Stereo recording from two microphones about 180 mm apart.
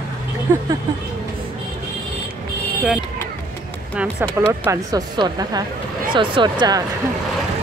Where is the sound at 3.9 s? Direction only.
15° right (ahead or behind).